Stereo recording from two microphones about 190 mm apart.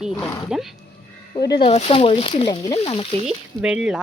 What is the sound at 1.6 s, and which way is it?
Speech, 30° left (ahead or behind).